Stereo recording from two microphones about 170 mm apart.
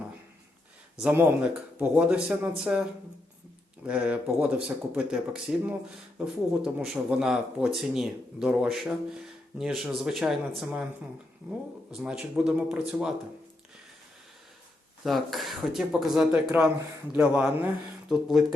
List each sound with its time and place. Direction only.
0.9 s speech: 10° right (ahead or behind)
3.8 s speech: 5° right (ahead or behind)
11.9 s speech: 5° right (ahead or behind)
15.0 s speech: centre (ahead or behind)